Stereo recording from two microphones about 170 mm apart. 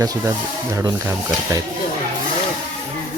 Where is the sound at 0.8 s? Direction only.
15° right (ahead or behind).